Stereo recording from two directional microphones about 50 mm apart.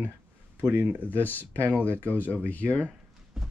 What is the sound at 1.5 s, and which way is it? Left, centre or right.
Speech, right.